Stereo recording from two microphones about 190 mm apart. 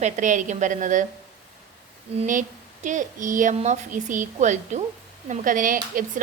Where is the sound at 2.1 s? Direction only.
40° right (ahead or behind).